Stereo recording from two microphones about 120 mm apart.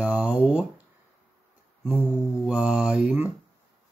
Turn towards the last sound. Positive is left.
turn(degrees=-10)  # may be behind; listen again after turning